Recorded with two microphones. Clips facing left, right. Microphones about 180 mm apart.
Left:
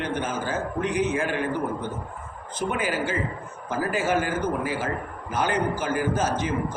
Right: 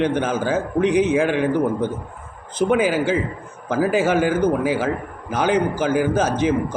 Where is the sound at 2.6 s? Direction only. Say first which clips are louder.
Right 9 dB; 90° right.